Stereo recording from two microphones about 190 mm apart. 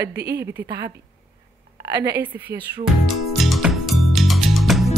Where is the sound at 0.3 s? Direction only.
15° right (ahead or behind).